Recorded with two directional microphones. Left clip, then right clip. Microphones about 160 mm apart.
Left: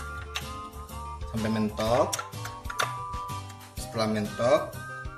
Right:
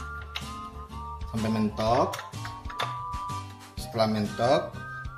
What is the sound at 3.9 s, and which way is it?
Speech, 60° right (ahead or behind).